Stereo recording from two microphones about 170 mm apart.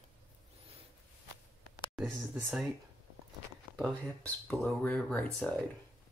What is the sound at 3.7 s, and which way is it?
Speech, 5° left (ahead or behind).